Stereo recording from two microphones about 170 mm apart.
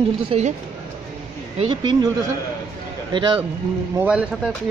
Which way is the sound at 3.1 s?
30° right (ahead or behind).